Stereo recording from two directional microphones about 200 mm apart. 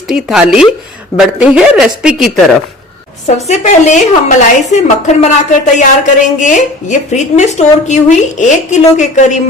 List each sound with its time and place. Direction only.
0.1 s speech: 5° right (ahead or behind)
3.2 s speech: 35° left (ahead or behind)